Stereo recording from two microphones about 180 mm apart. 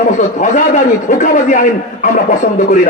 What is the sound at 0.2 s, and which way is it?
A man's voice, 45° left (ahead or behind).